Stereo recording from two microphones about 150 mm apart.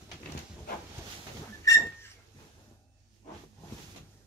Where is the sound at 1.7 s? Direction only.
20° left (ahead or behind).